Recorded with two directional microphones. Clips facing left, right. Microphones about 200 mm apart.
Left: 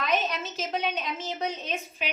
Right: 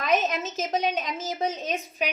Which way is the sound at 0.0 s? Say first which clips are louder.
Right 3 dB; 45° right (ahead or behind).